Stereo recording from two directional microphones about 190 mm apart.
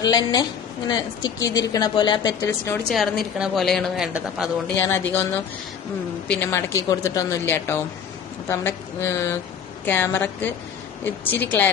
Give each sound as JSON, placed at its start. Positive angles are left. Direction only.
{"t": 0.0, "sound": "a woman's voice", "side_deg": 20}
{"t": 2.9, "sound": "a woman's voice", "side_deg": 0}
{"t": 4.7, "sound": "speech", "side_deg": 10}
{"t": 6.2, "sound": "speech", "side_deg": 10}